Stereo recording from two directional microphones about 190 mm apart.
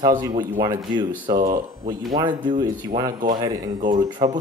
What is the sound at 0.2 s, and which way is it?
Speech, 20° right (ahead or behind).